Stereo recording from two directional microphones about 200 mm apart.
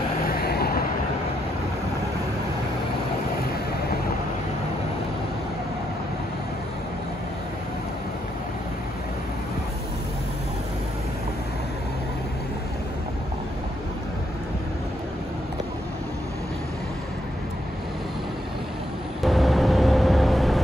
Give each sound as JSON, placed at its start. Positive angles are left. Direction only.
{"t": 0.4, "sound": "vehicle", "side_deg": 50}
{"t": 19.2, "sound": "vehicle", "side_deg": 0}